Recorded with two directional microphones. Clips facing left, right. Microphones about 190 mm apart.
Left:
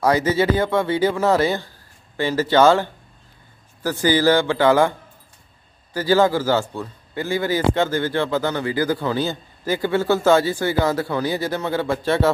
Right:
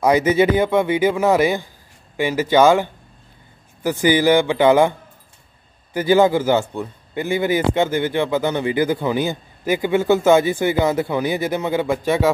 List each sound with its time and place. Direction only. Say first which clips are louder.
0.0 s speech: right 3 dB; 15° right (ahead or behind)
5.9 s a man's voice: right 2 dB; 20° right (ahead or behind)